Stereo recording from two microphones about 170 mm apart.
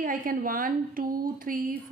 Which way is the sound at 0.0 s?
55° right (ahead or behind).